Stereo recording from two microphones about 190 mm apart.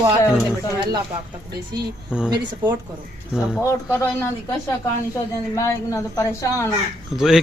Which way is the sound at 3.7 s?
10° left (ahead or behind).